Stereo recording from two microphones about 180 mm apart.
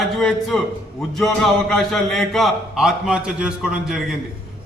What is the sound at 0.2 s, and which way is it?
A man's voice, 5° left (ahead or behind).